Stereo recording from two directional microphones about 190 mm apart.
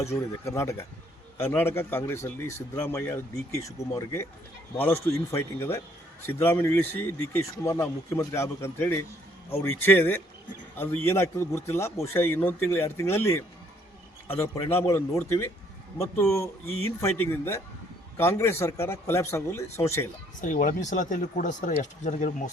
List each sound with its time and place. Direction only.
0.1 s speech: 15° left (ahead or behind)
17.0 s speech: 15° left (ahead or behind)
20.4 s speech: 45° left (ahead or behind)